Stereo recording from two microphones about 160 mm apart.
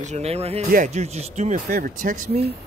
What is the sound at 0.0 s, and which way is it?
Speech, 45° right (ahead or behind).